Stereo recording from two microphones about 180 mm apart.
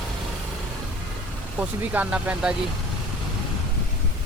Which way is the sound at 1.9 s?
10° right (ahead or behind).